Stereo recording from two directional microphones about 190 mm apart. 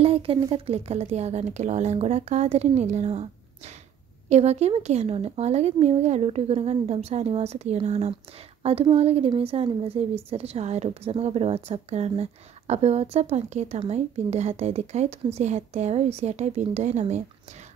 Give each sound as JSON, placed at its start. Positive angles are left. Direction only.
{"t": 0.0, "sound": "speech", "side_deg": -30}